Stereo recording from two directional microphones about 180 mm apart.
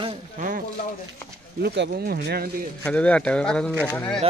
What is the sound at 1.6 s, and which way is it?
Speech, 65° right (ahead or behind).